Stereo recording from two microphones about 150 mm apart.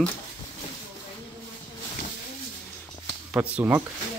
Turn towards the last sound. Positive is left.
turn(degrees=-10)  # may be behind; listen again after turning